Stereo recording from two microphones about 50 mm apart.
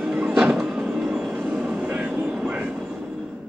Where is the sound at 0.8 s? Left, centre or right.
Centre.